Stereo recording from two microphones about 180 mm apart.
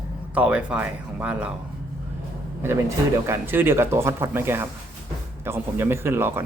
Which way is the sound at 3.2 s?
10° right (ahead or behind).